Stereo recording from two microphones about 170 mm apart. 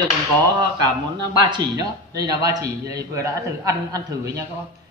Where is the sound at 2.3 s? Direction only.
20° right (ahead or behind).